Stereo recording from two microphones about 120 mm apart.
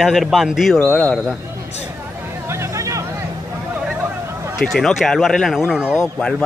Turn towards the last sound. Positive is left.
turn(degrees=5)  # may be behind; listen again after turning